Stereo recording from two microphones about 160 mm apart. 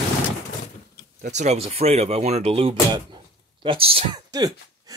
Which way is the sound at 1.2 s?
45° right (ahead or behind).